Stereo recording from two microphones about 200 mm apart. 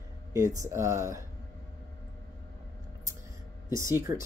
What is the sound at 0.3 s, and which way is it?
Speech, 15° right (ahead or behind).